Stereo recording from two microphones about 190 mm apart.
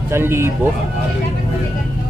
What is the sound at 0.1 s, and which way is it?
Speech, 15° right (ahead or behind).